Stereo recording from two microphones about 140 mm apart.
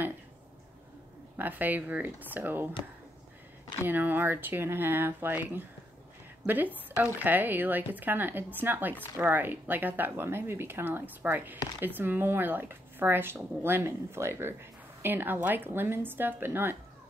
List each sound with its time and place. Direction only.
1.3 s speech: 15° right (ahead or behind)
3.8 s speech: 15° right (ahead or behind)